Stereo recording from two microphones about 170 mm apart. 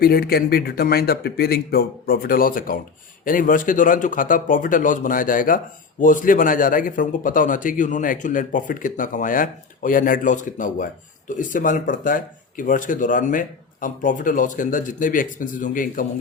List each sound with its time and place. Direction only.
0.0 s a man's voice: 65° left (ahead or behind)